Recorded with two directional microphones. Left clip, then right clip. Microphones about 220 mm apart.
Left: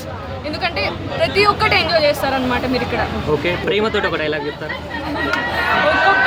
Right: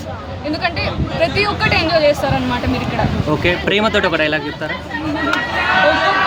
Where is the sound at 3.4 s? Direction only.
50° right (ahead or behind).